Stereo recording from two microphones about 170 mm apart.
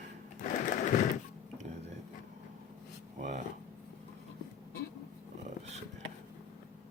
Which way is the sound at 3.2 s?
45° right (ahead or behind).